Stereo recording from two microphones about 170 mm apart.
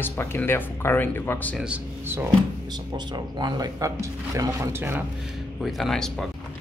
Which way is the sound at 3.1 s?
25° right (ahead or behind).